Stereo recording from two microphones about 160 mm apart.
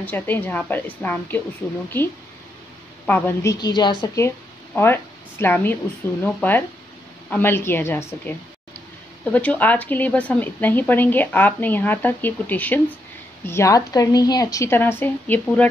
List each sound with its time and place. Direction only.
0.0 s speech: 10° left (ahead or behind)
3.1 s speech: 15° left (ahead or behind)
3.5 s a woman's voice: 25° left (ahead or behind)
4.7 s speech: 15° left (ahead or behind)